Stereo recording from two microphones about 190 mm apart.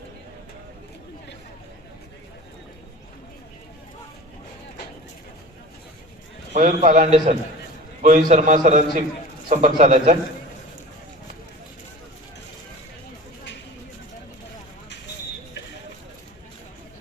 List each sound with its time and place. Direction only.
6.5 s a man's voice: 40° right (ahead or behind)